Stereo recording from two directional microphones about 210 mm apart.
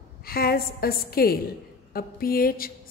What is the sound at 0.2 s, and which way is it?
A woman's voice, 45° left (ahead or behind).